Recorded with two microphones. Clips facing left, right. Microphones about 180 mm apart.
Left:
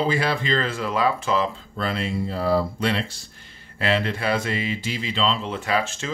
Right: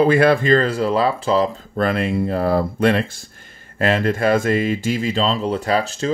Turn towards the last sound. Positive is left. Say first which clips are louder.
# right 5 dB
turn(degrees=-35)  # may be behind; listen again after turning